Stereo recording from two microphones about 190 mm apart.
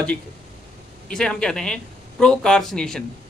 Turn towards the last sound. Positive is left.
turn(degrees=5)  # may be behind; listen again after turning